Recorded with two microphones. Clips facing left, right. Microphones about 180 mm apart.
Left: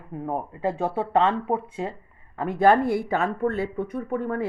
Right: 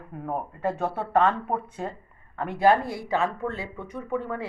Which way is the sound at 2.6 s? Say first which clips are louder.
Left 2 dB; 55° left (ahead or behind).